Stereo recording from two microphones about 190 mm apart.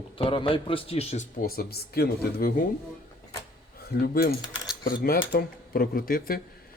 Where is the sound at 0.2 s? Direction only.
25° left (ahead or behind); by 2.6 s 55° left (ahead or behind).